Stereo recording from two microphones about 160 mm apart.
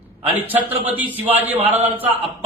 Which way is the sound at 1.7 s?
45° right (ahead or behind).